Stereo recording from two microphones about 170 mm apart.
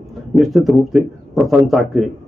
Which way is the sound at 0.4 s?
Centre (ahead or behind).